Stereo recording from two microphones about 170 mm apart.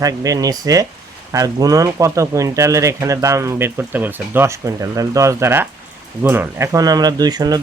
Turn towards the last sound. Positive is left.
turn(degrees=-25)  # may be behind; listen again after turning